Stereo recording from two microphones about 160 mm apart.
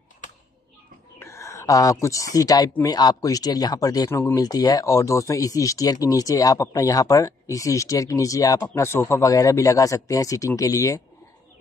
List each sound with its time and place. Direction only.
1.2 s speech: 20° left (ahead or behind)